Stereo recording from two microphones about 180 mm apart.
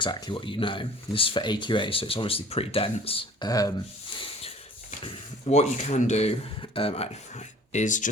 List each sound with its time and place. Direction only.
0.0 s speech: 25° left (ahead or behind); by 8.1 s 45° left (ahead or behind)